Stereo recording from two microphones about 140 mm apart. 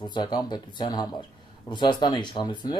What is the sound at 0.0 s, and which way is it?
Speech, 30° left (ahead or behind).